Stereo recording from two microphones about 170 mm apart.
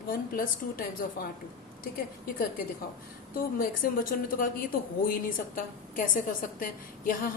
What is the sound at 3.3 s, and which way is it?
A woman's voice, 55° left (ahead or behind).